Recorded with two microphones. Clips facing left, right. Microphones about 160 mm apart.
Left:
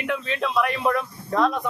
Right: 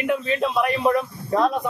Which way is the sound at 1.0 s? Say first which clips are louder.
Right 2 dB; 5° right (ahead or behind).